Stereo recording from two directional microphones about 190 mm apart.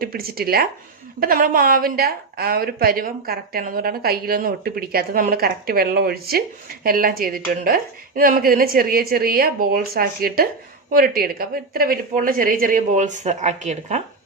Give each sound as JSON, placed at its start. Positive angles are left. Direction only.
{"t": 0.0, "sound": "a woman's voice", "side_deg": -50}